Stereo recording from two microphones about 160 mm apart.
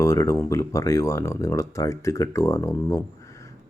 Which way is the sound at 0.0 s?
20° left (ahead or behind).